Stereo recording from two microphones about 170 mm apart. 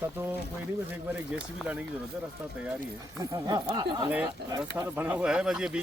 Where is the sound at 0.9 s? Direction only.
10° right (ahead or behind).